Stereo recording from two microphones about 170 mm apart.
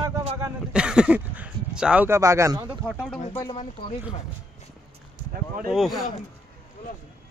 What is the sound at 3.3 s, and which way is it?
Speech, 25° left (ahead or behind).